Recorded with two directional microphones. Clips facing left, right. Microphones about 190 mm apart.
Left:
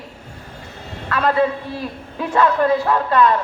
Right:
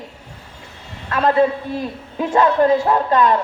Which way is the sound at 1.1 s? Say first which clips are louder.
Right 2 dB; 25° right (ahead or behind).